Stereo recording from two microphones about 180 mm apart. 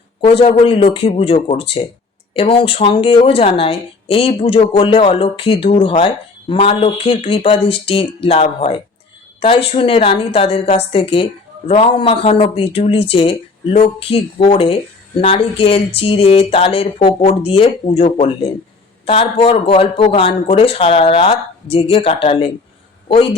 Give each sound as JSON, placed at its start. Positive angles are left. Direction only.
{"t": 0.2, "sound": "a woman's voice", "side_deg": 30}